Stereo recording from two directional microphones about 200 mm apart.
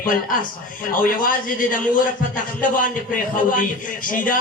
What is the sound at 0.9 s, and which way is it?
A man's voice, 45° left (ahead or behind).